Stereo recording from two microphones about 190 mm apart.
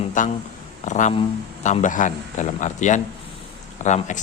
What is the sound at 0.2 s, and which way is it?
Speech, 40° left (ahead or behind).